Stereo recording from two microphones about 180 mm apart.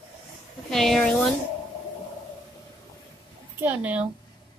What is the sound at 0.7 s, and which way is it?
Speech, centre (ahead or behind).